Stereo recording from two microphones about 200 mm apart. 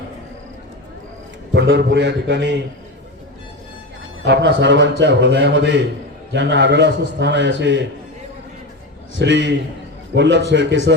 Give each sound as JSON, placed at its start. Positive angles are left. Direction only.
{"t": 1.5, "sound": "a man's voice", "side_deg": -60}
{"t": 4.2, "sound": "a man's voice", "side_deg": -60}
{"t": 9.1, "sound": "a man's voice", "side_deg": -60}